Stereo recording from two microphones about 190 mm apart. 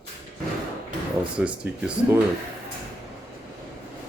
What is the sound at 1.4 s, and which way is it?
Speech, 5° right (ahead or behind).